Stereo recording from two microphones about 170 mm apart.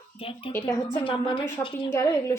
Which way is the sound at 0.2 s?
30° left (ahead or behind).